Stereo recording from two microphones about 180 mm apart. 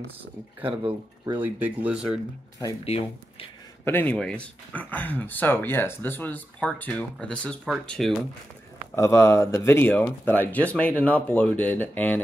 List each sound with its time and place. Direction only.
0.2 s speech: 10° right (ahead or behind)
2.8 s speech: 35° left (ahead or behind)
3.8 s speech: 10° left (ahead or behind)
8.9 s speech: 15° left (ahead or behind)